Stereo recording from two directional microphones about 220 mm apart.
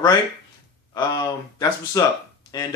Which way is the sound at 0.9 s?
20° left (ahead or behind).